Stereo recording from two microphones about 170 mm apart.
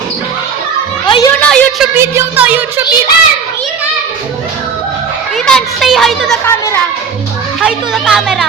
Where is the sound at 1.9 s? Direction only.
10° right (ahead or behind).